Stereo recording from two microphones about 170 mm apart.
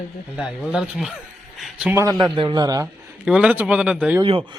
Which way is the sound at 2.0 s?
20° right (ahead or behind).